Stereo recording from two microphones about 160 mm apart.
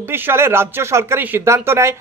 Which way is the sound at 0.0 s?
15° right (ahead or behind).